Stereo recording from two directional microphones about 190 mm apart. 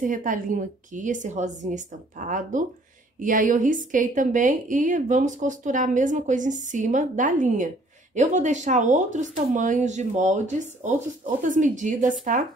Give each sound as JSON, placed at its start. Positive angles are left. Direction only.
{"t": 0.0, "sound": "a woman's voice", "side_deg": -45}